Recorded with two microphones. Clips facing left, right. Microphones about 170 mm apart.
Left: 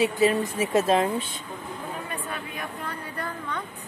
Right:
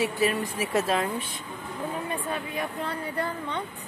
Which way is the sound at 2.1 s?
30° right (ahead or behind).